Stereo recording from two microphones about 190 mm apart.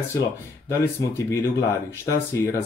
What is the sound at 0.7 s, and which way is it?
Speech, 15° left (ahead or behind).